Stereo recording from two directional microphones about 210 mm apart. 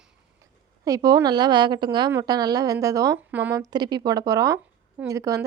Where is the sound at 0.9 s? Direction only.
15° right (ahead or behind).